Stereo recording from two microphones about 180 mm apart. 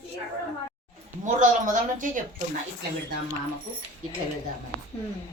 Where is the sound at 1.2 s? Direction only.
45° right (ahead or behind).